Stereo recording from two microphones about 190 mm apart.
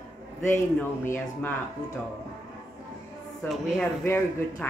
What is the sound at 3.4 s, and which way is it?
A woman's voice, centre (ahead or behind).